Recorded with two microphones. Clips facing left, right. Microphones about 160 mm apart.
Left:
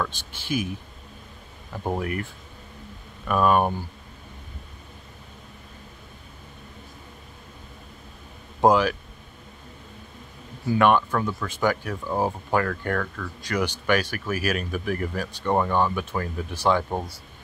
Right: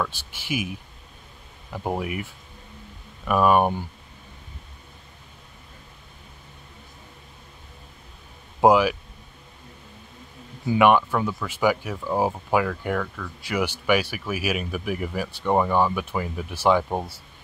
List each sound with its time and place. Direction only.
0.3 s speech: 10° right (ahead or behind)
1.8 s speech: 10° right (ahead or behind)
3.3 s speech: 10° right (ahead or behind)
8.5 s speech: 10° right (ahead or behind)
10.7 s speech: 10° right (ahead or behind)